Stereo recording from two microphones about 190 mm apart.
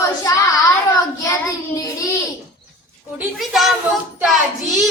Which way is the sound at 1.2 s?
15° left (ahead or behind).